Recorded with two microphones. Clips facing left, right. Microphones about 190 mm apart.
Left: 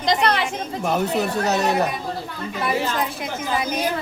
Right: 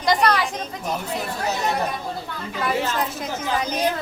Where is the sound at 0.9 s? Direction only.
70° left (ahead or behind).